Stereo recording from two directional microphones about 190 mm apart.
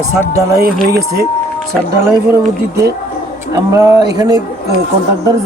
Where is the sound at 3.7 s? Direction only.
15° right (ahead or behind).